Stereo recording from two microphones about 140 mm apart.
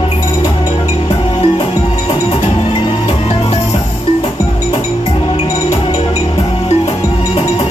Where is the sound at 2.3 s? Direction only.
40° left (ahead or behind).